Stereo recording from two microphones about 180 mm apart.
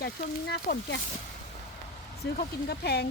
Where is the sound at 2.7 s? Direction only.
65° left (ahead or behind).